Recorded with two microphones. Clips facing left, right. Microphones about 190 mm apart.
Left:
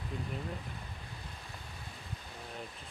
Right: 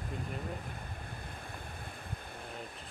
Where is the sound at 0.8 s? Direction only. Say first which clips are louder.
Right 3 dB; 55° right (ahead or behind).